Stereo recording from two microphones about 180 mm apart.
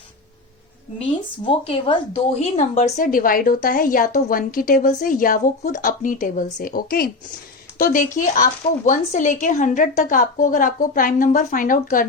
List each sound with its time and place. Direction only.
1.5 s speech: 30° left (ahead or behind); by 12.0 s 50° left (ahead or behind)